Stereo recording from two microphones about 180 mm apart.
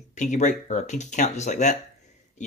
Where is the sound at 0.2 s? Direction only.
45° left (ahead or behind).